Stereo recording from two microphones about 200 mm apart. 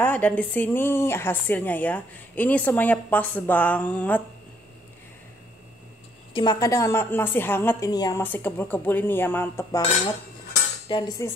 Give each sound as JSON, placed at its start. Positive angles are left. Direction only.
{"t": 0.0, "sound": "a woman's voice", "side_deg": 10}
{"t": 6.3, "sound": "a woman's voice", "side_deg": 20}
{"t": 10.9, "sound": "cutlery", "side_deg": 20}